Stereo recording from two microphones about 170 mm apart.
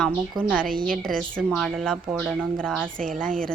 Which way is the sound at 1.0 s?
5° left (ahead or behind).